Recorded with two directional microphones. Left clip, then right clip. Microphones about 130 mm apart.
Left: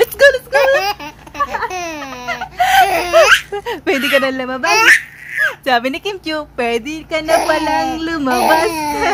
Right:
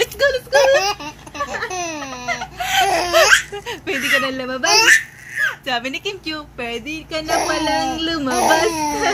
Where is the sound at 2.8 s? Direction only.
20° left (ahead or behind).